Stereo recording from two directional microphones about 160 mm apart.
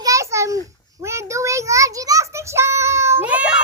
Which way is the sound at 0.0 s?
20° right (ahead or behind).